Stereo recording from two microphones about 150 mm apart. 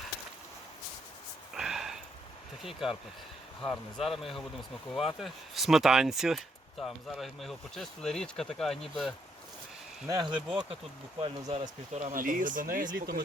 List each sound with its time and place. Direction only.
1.5 s a sound: 5° right (ahead or behind)
2.6 s speech: 5° right (ahead or behind)
10.1 s speech: 30° right (ahead or behind)
11.2 s speech: 45° right (ahead or behind)
11.9 s speech: 60° right (ahead or behind)